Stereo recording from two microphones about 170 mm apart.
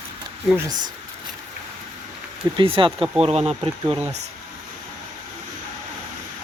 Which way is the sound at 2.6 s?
30° right (ahead or behind).